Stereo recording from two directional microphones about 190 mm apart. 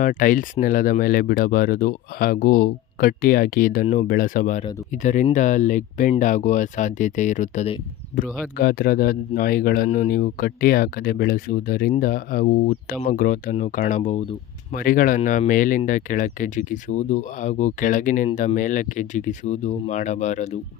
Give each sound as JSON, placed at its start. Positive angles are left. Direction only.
{"t": 0.0, "sound": "speech", "side_deg": 45}